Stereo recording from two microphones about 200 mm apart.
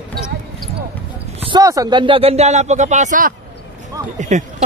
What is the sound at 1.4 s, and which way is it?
Speech, 20° right (ahead or behind).